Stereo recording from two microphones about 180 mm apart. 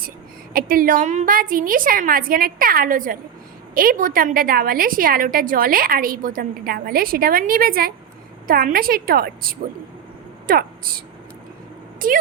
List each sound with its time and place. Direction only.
0.5 s a woman's voice: 55° right (ahead or behind)